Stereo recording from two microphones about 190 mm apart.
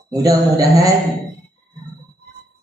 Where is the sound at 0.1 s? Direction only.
20° right (ahead or behind).